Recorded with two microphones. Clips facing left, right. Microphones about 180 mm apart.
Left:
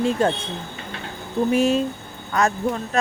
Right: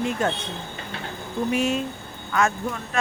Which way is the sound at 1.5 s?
35° left (ahead or behind).